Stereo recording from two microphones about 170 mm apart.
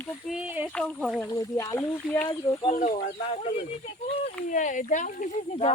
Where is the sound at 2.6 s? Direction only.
45° left (ahead or behind).